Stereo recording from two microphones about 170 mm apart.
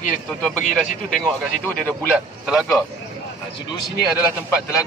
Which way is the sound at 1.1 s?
Centre (ahead or behind).